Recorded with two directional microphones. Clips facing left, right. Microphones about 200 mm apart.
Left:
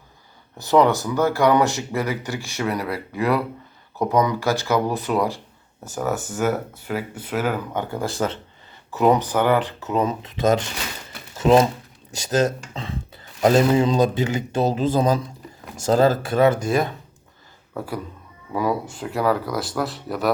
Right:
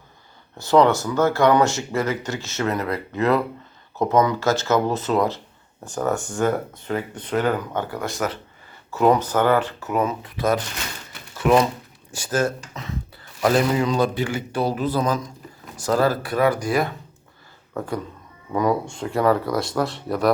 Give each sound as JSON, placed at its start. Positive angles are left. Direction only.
{"t": 0.9, "sound": "speech", "side_deg": 15}
{"t": 7.9, "sound": "a man's voice", "side_deg": 30}
{"t": 8.9, "sound": "a man's voice", "side_deg": 15}
{"t": 17.7, "sound": "speech", "side_deg": 5}